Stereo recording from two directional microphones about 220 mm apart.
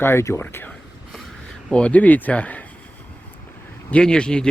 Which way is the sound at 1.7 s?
5° left (ahead or behind).